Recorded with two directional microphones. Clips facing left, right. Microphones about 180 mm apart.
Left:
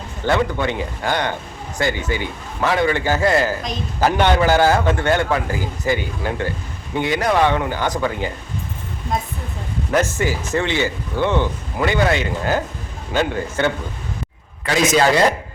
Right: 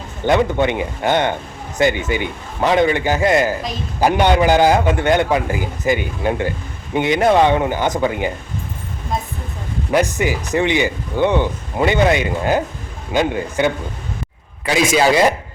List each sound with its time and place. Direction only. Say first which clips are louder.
0.3 s speech: right 4 dB; 20° right (ahead or behind)
9.9 s speech: right 2 dB; 15° right (ahead or behind)